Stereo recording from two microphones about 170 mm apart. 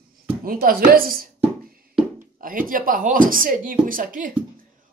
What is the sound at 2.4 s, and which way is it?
Speech, 55° right (ahead or behind).